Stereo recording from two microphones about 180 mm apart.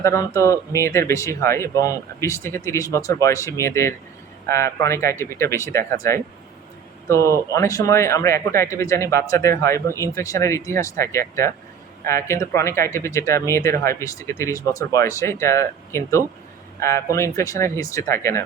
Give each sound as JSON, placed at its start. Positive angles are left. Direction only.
{"t": 0.0, "sound": "speech", "side_deg": 15}